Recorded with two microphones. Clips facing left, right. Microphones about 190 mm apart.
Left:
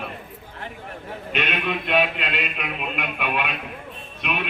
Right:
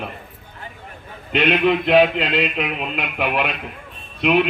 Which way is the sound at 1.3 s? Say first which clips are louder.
Right 9 dB; 30° right (ahead or behind).